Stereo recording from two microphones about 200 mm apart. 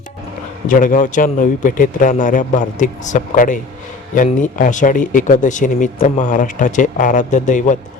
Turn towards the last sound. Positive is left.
turn(degrees=40)  # may be behind; listen again after turning